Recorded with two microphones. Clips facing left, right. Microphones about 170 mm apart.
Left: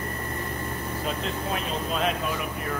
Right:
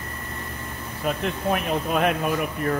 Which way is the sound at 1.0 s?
60° right (ahead or behind).